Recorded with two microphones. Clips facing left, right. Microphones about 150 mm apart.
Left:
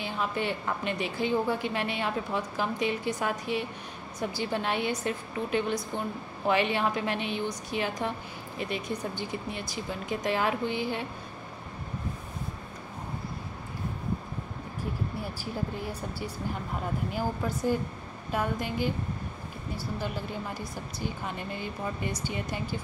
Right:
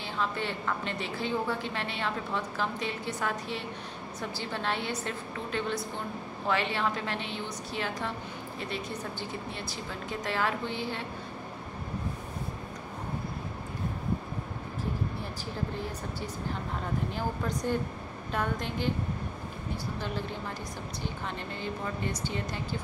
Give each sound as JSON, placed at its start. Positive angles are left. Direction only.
{"t": 0.0, "sound": "a woman's voice", "side_deg": 15}
{"t": 17.1, "sound": "a woman's voice", "side_deg": 5}
{"t": 21.0, "sound": "a woman's voice", "side_deg": 10}